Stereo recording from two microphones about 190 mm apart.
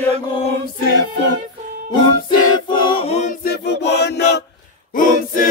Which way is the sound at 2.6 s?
30° left (ahead or behind).